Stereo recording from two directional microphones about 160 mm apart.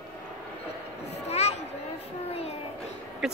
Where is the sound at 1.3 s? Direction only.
45° left (ahead or behind).